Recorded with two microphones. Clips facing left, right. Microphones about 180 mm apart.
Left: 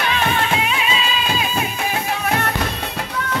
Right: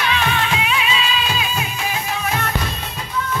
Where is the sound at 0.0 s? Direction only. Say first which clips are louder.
Left 1 dB; 45° left (ahead or behind).